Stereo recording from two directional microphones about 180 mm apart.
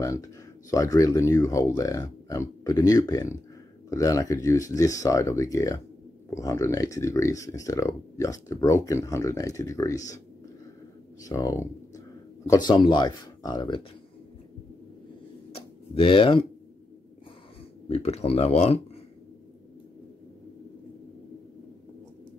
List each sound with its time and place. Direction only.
0.0 s speech: 20° left (ahead or behind)
11.2 s speech: 20° left (ahead or behind)
15.5 s tick-tock: 30° left (ahead or behind)
17.8 s speech: 35° left (ahead or behind)